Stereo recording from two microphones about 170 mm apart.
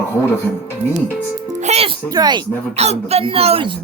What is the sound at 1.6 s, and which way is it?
Music, 35° right (ahead or behind).